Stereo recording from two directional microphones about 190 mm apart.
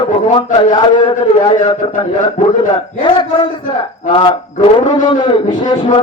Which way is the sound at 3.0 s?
25° left (ahead or behind).